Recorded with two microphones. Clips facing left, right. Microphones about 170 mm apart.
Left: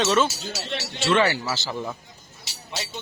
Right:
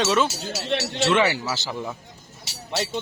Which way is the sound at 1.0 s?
15° right (ahead or behind).